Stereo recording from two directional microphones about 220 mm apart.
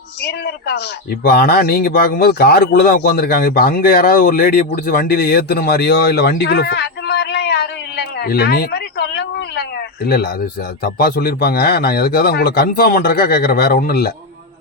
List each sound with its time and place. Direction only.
0.2 s a man's voice: 50° left (ahead or behind)